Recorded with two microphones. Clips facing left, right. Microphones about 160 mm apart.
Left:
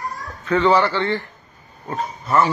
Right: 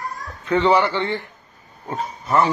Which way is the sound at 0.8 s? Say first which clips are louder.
Left 1 dB; 10° right (ahead or behind).